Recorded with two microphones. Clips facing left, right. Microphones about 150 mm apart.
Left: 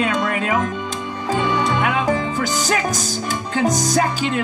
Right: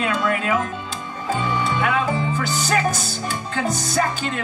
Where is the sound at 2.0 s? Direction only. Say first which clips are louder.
Left 3 dB; 40° left (ahead or behind).